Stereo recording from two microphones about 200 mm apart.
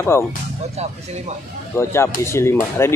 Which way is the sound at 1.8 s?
10° left (ahead or behind).